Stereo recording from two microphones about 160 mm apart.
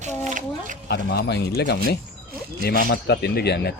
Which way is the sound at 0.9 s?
90° left.